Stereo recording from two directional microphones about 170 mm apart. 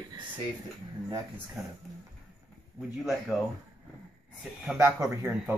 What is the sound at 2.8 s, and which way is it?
Speech, 5° right (ahead or behind).